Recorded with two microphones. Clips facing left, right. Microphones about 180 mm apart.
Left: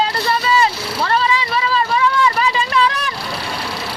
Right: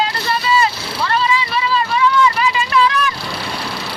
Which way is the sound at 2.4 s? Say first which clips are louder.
Right 1 dB; 35° left (ahead or behind).